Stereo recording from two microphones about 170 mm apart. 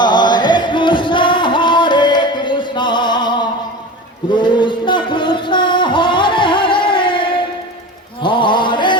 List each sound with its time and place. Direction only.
0.0 s music: 25° left (ahead or behind)
8.2 s chant: 30° left (ahead or behind)